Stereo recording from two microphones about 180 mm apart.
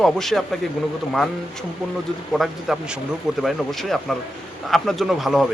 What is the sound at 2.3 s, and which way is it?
A man's voice, centre (ahead or behind).